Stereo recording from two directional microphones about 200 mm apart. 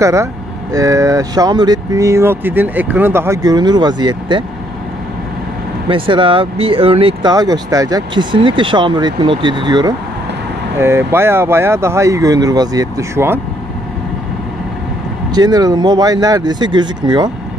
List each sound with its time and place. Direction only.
0.0 s speech: 15° right (ahead or behind)
5.9 s speech: 25° right (ahead or behind)
15.3 s speech: 20° right (ahead or behind)